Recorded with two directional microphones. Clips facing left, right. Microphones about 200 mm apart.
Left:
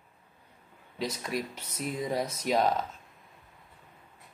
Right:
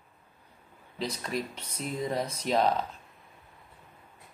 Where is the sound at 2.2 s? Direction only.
30° right (ahead or behind).